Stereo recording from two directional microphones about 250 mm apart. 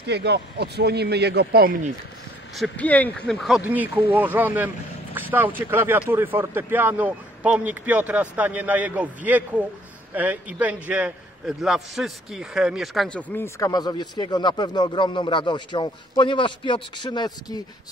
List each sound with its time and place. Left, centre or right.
0.0 s a man's voice: right
2.5 s a man's voice: centre